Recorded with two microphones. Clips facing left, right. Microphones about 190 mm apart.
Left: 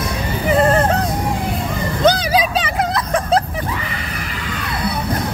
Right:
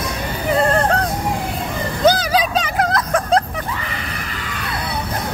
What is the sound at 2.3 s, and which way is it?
Vehicle, centre (ahead or behind).